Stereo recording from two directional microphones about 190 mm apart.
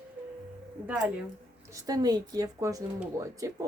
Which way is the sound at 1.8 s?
20° right (ahead or behind).